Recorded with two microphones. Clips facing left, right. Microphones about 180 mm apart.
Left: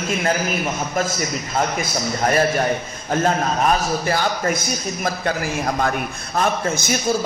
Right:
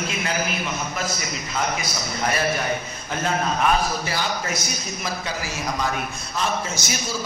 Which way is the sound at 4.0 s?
50° left (ahead or behind).